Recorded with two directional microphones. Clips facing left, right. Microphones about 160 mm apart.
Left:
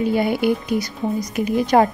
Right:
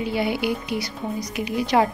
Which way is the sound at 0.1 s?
50° left (ahead or behind).